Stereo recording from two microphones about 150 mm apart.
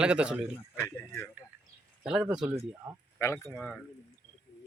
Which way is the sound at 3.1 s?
15° left (ahead or behind).